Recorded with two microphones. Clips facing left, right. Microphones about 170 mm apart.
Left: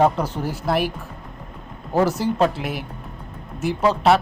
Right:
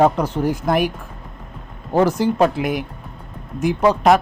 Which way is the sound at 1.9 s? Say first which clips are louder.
Right 3 dB; 10° left (ahead or behind).